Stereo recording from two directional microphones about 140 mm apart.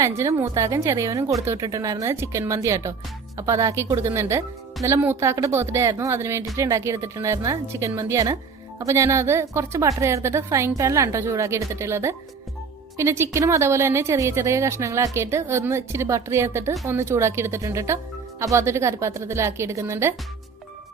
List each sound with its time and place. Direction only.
0.0 s a woman's voice: 20° right (ahead or behind)